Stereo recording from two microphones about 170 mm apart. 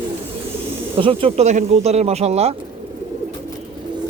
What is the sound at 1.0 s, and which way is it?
Speech, 30° right (ahead or behind).